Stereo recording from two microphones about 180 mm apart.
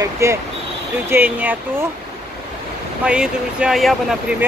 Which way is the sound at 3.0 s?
5° right (ahead or behind).